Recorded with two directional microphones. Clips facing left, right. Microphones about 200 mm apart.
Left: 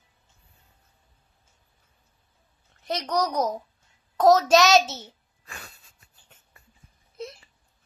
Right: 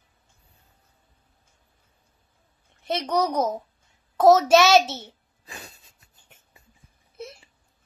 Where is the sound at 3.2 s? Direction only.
5° right (ahead or behind).